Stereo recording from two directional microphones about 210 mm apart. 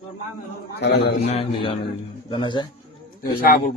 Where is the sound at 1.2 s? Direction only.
30° left (ahead or behind).